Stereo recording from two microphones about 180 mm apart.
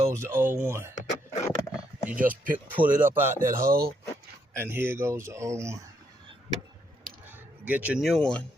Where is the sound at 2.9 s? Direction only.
15° right (ahead or behind).